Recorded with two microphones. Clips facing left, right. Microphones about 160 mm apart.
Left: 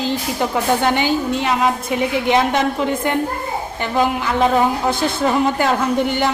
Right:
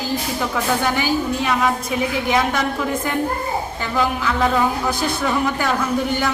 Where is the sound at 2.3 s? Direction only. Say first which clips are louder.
Left 4 dB; 25° left (ahead or behind).